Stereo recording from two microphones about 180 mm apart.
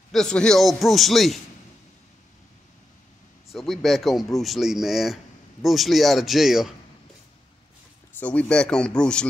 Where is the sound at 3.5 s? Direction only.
Centre (ahead or behind).